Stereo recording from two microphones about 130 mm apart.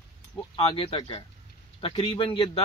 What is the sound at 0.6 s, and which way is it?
A man's voice, 50° left (ahead or behind).